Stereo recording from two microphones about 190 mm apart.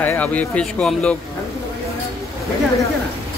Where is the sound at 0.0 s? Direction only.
10° left (ahead or behind).